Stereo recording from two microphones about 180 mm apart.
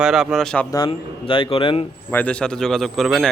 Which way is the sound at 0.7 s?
25° left (ahead or behind).